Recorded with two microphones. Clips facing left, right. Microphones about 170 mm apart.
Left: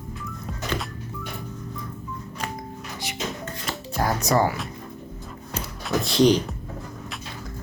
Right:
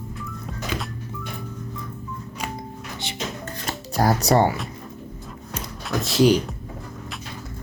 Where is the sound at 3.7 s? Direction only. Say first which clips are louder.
Right 4 dB; 35° right (ahead or behind).